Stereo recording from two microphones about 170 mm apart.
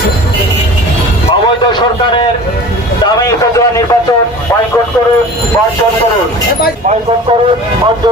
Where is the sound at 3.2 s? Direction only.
20° left (ahead or behind).